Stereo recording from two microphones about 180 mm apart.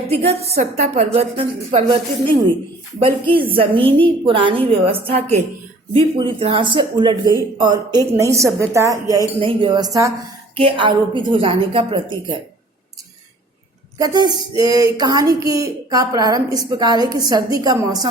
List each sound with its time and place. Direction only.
0.1 s a woman's voice: 35° right (ahead or behind)
3.0 s a woman's voice: 30° right (ahead or behind)
14.0 s a woman's voice: 20° right (ahead or behind)